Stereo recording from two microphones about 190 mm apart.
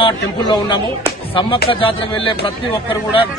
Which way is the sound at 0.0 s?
25° left (ahead or behind).